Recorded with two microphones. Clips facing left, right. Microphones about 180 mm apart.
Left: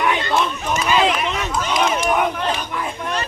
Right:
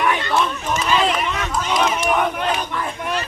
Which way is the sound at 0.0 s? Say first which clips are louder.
Even; 15° left (ahead or behind).